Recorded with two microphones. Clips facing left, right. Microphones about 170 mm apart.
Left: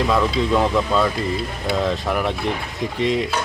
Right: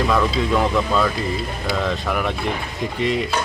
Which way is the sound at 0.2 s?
Centre (ahead or behind).